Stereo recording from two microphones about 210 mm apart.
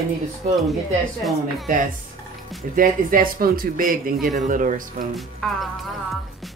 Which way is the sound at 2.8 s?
40° right (ahead or behind).